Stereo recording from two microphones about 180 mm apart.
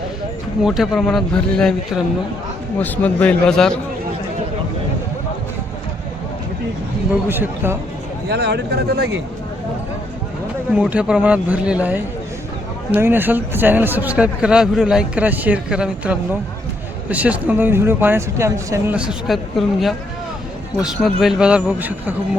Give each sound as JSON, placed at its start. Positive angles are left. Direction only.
{"t": 0.6, "sound": "a man's voice", "side_deg": 0}
{"t": 7.1, "sound": "speech", "side_deg": -10}
{"t": 8.3, "sound": "speech", "side_deg": -70}
{"t": 10.7, "sound": "speech", "side_deg": -5}